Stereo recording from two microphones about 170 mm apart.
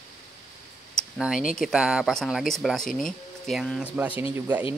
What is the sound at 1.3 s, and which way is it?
Speech, 50° left (ahead or behind).